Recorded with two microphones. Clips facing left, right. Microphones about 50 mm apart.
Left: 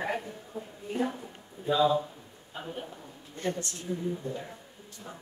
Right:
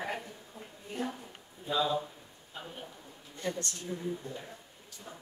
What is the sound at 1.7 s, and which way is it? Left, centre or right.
A man's voice, centre.